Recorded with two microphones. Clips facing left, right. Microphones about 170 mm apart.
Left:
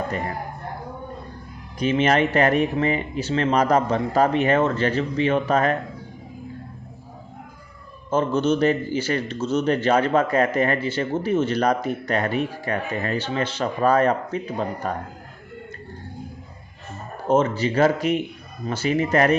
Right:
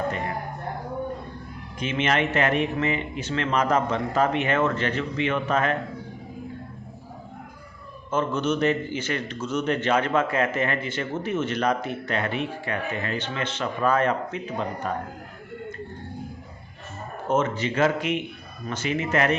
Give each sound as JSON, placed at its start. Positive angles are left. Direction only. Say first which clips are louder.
{"t": 1.8, "sound": "a man's voice", "louder": "left 5 dB", "side_deg": 35}
{"t": 8.1, "sound": "a man's voice", "louder": "left 4 dB", "side_deg": 30}
{"t": 17.2, "sound": "a man's voice", "louder": "left 4 dB", "side_deg": 30}